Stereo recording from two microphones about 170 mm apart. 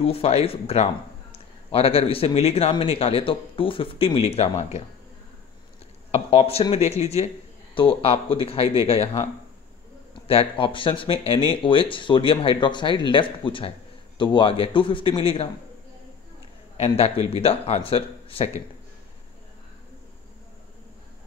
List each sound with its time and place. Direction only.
0.0 s speech: 35° left (ahead or behind)
6.1 s speech: 35° left (ahead or behind)
10.2 s speech: 35° left (ahead or behind)
16.7 s speech: 35° left (ahead or behind)